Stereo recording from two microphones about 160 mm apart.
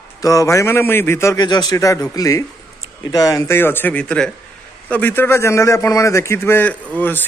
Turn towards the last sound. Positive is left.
turn(degrees=10)  # may be behind; listen again after turning